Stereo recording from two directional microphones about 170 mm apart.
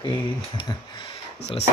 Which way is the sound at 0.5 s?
25° left (ahead or behind).